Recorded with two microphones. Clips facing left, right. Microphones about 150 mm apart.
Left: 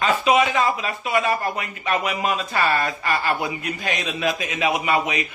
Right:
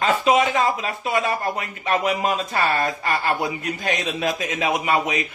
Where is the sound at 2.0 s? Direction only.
30° right (ahead or behind).